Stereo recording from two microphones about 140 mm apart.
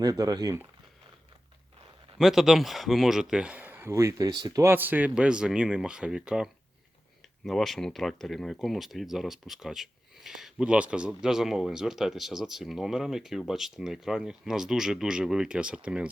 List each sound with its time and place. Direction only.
0.0 s speech: 25° right (ahead or behind)
2.1 s speech: centre (ahead or behind)